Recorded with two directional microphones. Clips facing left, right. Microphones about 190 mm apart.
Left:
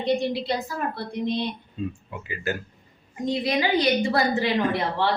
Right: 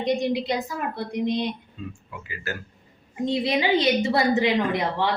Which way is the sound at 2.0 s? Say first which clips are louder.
Left 5 dB; 20° left (ahead or behind).